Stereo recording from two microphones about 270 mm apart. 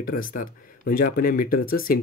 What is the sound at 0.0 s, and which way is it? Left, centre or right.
Speech, left.